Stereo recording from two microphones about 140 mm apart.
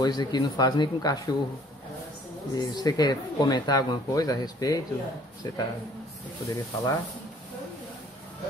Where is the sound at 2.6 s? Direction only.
30° left (ahead or behind).